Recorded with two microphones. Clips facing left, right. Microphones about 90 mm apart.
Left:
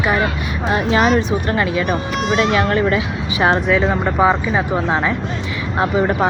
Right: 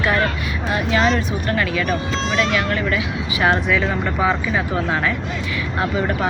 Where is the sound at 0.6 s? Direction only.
30° left (ahead or behind).